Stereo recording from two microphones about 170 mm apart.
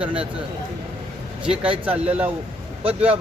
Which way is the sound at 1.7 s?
30° right (ahead or behind).